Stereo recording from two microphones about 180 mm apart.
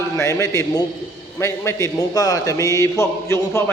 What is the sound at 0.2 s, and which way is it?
A man's voice, 15° left (ahead or behind).